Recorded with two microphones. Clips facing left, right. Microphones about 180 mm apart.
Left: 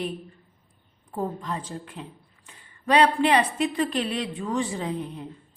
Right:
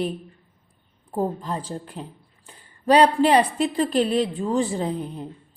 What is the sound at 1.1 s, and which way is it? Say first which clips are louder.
Speech: right 4 dB; 35° right (ahead or behind).